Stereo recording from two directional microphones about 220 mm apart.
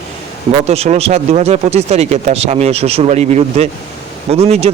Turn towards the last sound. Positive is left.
turn(degrees=-30)  # may be behind; listen again after turning